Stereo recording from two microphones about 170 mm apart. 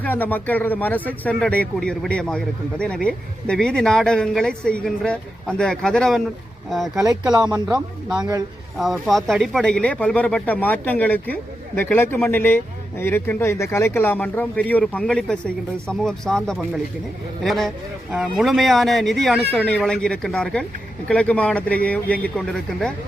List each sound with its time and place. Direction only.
0.0 s speech: 10° left (ahead or behind)
6.9 s speech: 20° right (ahead or behind)
8.2 s speech: 25° right (ahead or behind)
8.8 s speech: centre (ahead or behind)